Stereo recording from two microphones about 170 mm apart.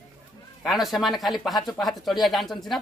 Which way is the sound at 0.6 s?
Centre (ahead or behind).